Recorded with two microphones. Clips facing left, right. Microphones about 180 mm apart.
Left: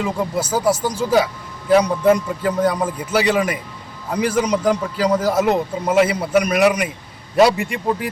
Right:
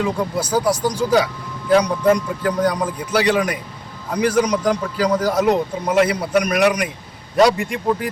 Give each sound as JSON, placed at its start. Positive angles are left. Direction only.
{"t": 0.0, "sound": "a man's voice", "side_deg": 5}